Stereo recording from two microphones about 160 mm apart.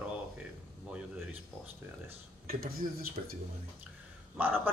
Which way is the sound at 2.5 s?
70° right (ahead or behind).